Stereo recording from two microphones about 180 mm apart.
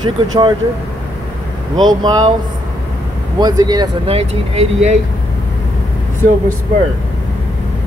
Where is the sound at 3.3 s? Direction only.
20° right (ahead or behind).